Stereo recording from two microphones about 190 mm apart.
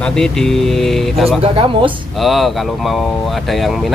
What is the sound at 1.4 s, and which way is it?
Speech, 30° right (ahead or behind).